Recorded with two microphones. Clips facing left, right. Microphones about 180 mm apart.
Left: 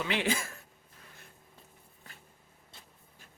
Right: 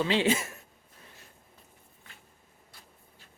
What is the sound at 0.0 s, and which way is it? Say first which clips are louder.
Speech: right 5 dB; 30° right (ahead or behind).